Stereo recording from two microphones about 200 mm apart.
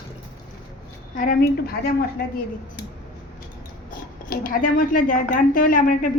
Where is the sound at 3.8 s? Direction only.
45° left (ahead or behind).